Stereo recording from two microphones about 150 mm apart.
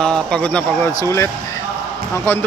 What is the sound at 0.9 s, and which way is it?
Speech, 20° left (ahead or behind).